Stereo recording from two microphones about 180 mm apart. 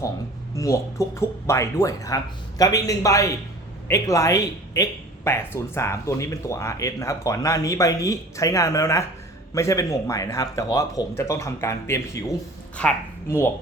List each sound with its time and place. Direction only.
0.5 s speech: 15° left (ahead or behind)